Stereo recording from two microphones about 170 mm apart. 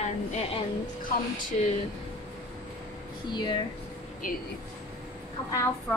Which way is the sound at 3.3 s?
25° left (ahead or behind).